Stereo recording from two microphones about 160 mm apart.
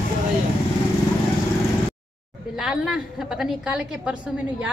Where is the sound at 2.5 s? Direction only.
5° right (ahead or behind).